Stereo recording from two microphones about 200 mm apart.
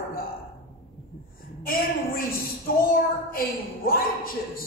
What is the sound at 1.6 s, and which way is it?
A woman's voice, 45° left (ahead or behind).